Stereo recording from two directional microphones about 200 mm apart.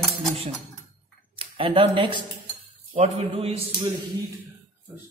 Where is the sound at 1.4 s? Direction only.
25° right (ahead or behind).